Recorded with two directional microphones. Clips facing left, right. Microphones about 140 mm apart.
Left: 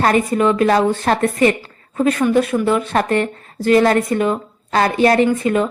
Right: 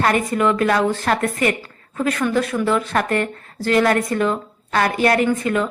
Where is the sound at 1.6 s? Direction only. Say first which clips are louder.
Left 5 dB; 25° left (ahead or behind).